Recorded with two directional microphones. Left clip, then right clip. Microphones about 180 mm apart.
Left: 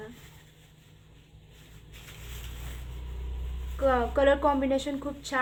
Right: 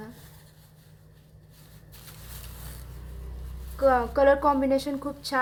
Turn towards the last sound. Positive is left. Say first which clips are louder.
# right 3 dB
turn(degrees=-15)  # may be behind; listen again after turning